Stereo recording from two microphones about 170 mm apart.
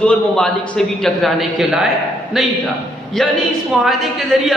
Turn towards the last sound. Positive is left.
turn(degrees=0)  # may be behind; listen again after turning